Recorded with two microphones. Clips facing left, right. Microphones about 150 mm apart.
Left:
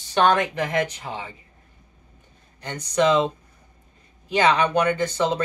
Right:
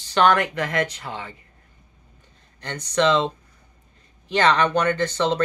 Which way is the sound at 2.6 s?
15° left (ahead or behind).